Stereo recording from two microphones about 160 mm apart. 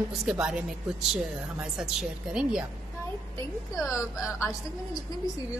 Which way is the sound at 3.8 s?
20° left (ahead or behind).